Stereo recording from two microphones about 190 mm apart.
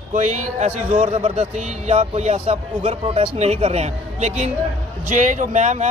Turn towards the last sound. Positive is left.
turn(degrees=-40)  # may be behind; listen again after turning